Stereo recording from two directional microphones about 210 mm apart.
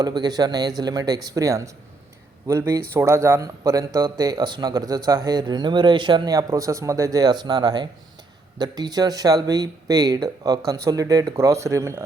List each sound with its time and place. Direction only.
0.0 s speech: 20° right (ahead or behind)